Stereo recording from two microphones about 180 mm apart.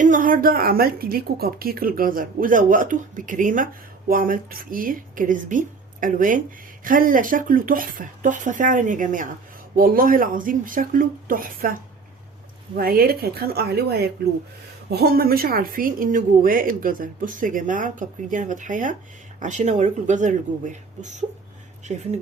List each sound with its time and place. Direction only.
0.0 s a woman's voice: 45° right (ahead or behind)